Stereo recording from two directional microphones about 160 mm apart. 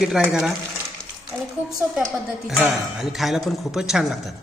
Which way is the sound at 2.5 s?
Centre (ahead or behind).